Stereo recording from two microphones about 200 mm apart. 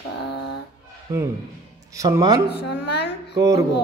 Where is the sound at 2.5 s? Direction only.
60° left (ahead or behind).